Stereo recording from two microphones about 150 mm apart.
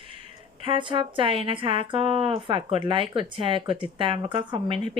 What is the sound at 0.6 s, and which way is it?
A woman's voice, 35° right (ahead or behind).